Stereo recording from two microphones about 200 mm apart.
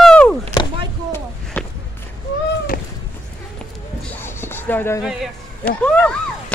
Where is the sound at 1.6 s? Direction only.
10° left (ahead or behind).